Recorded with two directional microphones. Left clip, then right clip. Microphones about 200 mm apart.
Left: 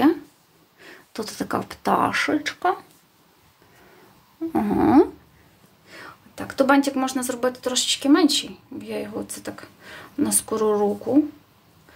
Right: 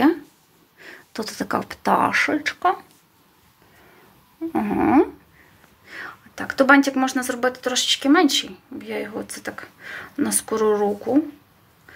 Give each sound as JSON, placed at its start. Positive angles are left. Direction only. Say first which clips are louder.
{"t": 0.7, "sound": "speech", "louder": "right 1 dB", "side_deg": 0}
{"t": 4.5, "sound": "speech", "louder": "even", "side_deg": 15}
{"t": 5.9, "sound": "speech", "louder": "right 6 dB", "side_deg": 5}